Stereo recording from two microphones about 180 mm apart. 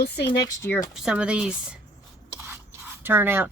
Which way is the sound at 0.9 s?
5° right (ahead or behind).